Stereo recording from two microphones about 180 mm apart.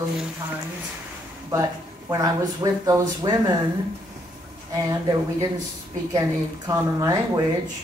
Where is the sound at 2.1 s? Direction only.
20° right (ahead or behind).